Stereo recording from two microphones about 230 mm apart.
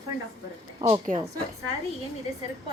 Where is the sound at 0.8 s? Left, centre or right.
Right.